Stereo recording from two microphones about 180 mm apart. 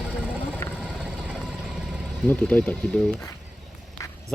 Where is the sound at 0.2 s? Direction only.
10° right (ahead or behind).